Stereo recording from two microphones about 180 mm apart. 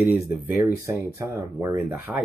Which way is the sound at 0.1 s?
10° right (ahead or behind).